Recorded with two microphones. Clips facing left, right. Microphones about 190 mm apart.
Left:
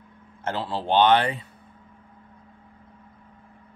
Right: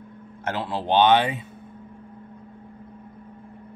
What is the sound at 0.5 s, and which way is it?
Speech, 15° right (ahead or behind).